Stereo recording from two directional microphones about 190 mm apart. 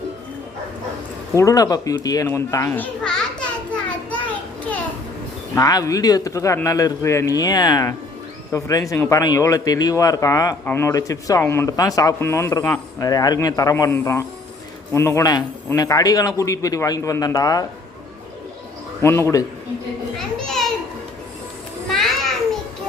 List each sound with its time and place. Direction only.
1.4 s a sound: 20° left (ahead or behind)
5.5 s a man's voice: 20° left (ahead or behind)
19.0 s speech: 15° left (ahead or behind)
20.1 s children playing: centre (ahead or behind)
21.8 s children playing: centre (ahead or behind)